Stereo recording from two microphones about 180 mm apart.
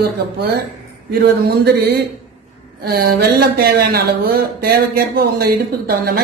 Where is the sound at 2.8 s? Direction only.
60° right (ahead or behind).